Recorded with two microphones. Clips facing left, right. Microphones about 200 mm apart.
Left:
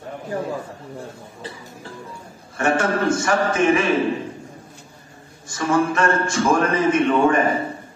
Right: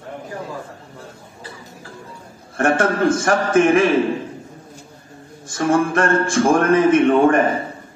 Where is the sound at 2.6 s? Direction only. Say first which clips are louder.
Right 3 dB; 50° right (ahead or behind).